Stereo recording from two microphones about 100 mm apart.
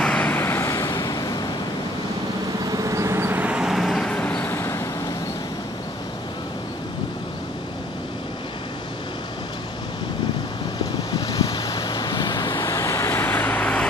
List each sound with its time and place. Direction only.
0.0 s vehicle: 15° left (ahead or behind); by 1.3 s 40° left (ahead or behind)
2.7 s vehicle: 35° right (ahead or behind); by 4.5 s 15° left (ahead or behind)
4.5 s vehicle: 25° left (ahead or behind)
11.1 s waves: 45° left (ahead or behind)
12.6 s vehicle: 30° left (ahead or behind); by 13.8 s 15° left (ahead or behind)